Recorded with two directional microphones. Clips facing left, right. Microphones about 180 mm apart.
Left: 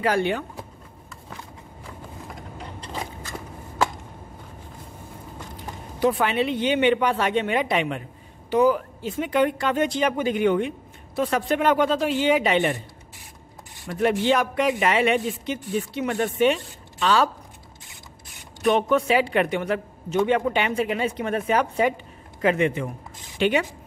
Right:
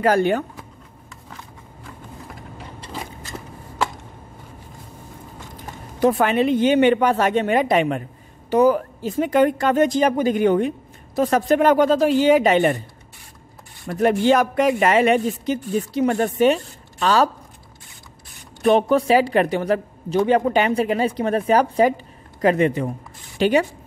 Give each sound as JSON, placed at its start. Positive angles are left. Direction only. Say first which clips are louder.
{"t": 0.0, "sound": "speech", "louder": "right 5 dB", "side_deg": -45}
{"t": 5.9, "sound": "speech", "louder": "right 4 dB", "side_deg": -45}
{"t": 13.8, "sound": "speech", "louder": "right 4 dB", "side_deg": -45}
{"t": 18.6, "sound": "speech", "louder": "right 4 dB", "side_deg": -35}